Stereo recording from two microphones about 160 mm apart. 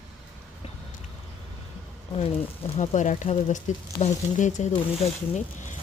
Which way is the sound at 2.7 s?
50° left (ahead or behind).